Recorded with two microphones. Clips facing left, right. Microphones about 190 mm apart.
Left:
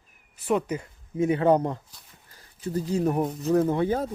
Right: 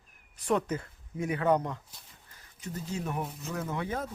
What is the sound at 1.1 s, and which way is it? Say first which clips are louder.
Speech: left 6 dB; 25° left (ahead or behind).